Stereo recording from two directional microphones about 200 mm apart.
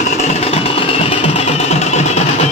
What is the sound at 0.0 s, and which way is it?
Music, 35° left (ahead or behind).